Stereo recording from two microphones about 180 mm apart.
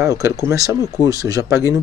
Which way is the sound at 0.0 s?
15° right (ahead or behind).